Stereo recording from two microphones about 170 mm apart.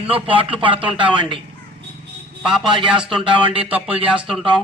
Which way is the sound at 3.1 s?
30° right (ahead or behind).